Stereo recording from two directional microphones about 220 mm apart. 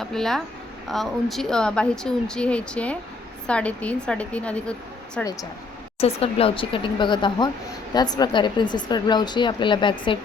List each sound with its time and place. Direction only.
0.0 s a woman's voice: centre (ahead or behind)
6.0 s a woman's voice: 25° left (ahead or behind)